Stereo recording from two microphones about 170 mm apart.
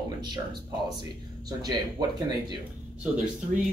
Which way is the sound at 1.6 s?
25° right (ahead or behind).